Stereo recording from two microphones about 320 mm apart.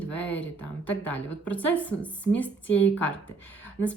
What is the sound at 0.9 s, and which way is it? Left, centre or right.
Speech, centre.